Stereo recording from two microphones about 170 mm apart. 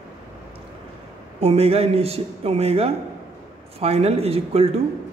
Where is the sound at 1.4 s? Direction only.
35° right (ahead or behind).